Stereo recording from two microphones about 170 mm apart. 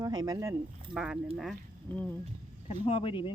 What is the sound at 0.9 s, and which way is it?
Speech, 5° right (ahead or behind).